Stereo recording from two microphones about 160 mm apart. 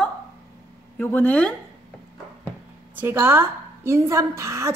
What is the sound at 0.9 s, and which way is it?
Speech, 10° left (ahead or behind).